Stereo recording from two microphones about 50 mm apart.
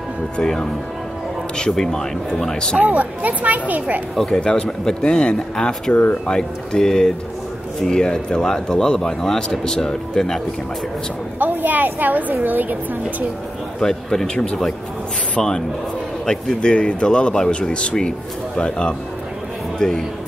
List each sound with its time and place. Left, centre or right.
0.4 s speech: centre
1.7 s speech: centre
2.8 s a woman's voice: right
4.3 s speech: centre
11.3 s a woman's voice: right
13.7 s a man's voice: centre
16.6 s speech: centre